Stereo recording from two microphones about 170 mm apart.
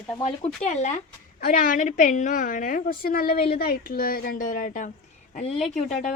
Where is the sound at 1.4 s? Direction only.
55° left (ahead or behind).